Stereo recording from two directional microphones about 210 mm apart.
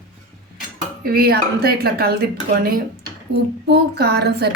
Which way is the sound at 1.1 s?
45° right (ahead or behind).